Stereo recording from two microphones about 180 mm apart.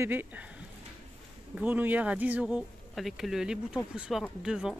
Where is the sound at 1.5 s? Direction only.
10° right (ahead or behind).